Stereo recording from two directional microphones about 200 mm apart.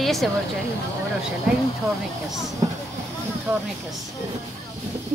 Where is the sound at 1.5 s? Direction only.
Centre (ahead or behind).